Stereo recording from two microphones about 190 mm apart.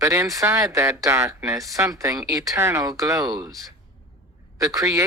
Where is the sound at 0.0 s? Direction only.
15° right (ahead or behind).